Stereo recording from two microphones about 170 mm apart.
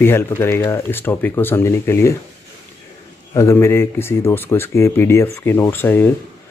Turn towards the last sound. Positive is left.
turn(degrees=10)  # may be behind; listen again after turning